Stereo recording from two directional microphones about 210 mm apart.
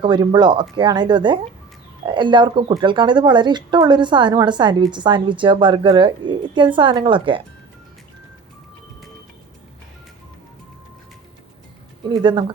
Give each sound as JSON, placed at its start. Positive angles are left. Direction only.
{"t": 0.0, "sound": "speech", "side_deg": -20}
{"t": 12.0, "sound": "speech", "side_deg": -20}